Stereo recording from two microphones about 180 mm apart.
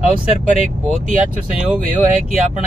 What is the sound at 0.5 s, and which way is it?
Speech, 45° right (ahead or behind).